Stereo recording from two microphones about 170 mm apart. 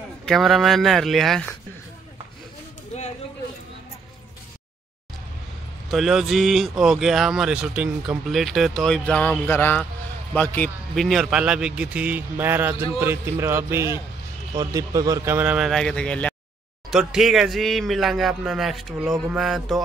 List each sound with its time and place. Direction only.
0.2 s speech: centre (ahead or behind)
2.9 s a sound: 40° left (ahead or behind)
5.9 s speech: centre (ahead or behind)